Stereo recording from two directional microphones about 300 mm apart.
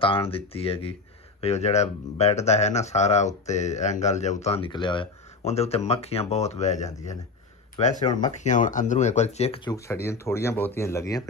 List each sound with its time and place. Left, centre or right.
0.0 s speech: centre